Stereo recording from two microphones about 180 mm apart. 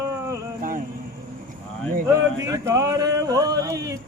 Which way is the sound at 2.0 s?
15° right (ahead or behind).